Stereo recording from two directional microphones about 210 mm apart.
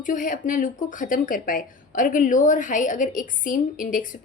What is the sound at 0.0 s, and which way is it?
Speech, 40° left (ahead or behind).